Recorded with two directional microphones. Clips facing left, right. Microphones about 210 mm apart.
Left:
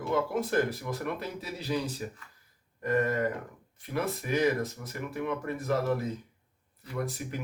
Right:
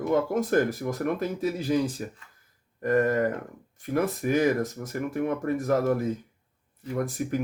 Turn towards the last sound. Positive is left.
turn(degrees=-45)  # may be behind; listen again after turning